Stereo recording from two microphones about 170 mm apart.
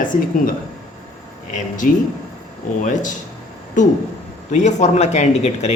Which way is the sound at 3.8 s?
50° left (ahead or behind).